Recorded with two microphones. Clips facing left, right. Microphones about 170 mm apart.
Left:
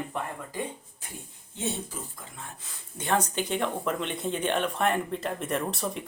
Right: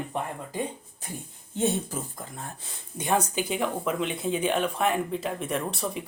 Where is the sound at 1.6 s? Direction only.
45° right (ahead or behind).